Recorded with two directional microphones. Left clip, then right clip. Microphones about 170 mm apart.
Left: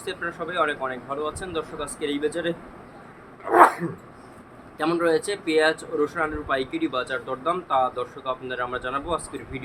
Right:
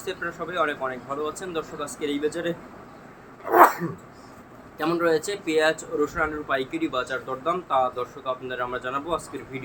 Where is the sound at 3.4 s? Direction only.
Centre (ahead or behind).